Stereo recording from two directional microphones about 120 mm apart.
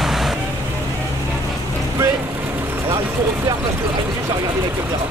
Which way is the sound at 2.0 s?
20° right (ahead or behind).